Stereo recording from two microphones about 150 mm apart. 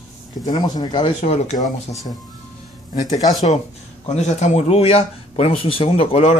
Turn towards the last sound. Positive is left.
turn(degrees=40)  # may be behind; listen again after turning